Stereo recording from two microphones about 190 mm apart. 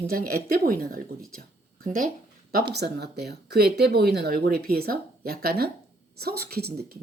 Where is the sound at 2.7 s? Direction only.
60° right (ahead or behind).